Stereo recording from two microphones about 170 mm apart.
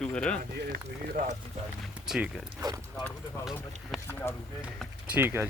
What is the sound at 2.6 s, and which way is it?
Speech, 25° right (ahead or behind).